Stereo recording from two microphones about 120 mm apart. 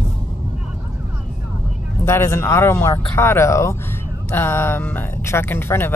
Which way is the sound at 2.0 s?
20° left (ahead or behind).